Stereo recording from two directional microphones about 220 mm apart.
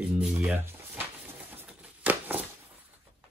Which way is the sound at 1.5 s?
5° right (ahead or behind).